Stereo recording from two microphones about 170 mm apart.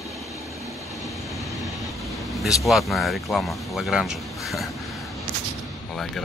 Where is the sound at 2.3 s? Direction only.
Centre (ahead or behind).